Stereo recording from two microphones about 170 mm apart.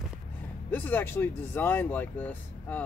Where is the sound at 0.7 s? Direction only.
10° left (ahead or behind).